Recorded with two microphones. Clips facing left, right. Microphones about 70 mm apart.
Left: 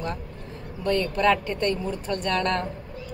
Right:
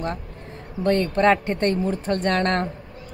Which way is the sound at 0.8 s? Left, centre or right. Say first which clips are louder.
Right 3 dB; right.